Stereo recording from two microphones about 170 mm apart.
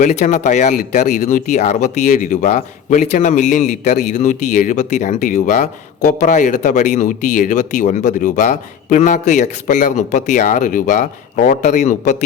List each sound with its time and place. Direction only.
0.0 s speech: 45° left (ahead or behind)